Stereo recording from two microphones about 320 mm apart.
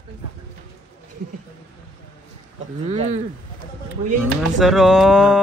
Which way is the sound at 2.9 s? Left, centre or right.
Centre.